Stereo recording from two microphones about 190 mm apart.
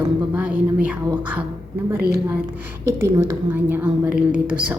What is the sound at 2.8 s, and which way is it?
A woman's voice, 15° right (ahead or behind).